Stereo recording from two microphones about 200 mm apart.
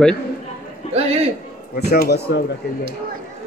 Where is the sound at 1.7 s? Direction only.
55° left (ahead or behind).